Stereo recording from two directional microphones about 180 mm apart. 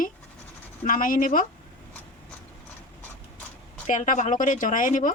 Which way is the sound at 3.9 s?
45° left (ahead or behind).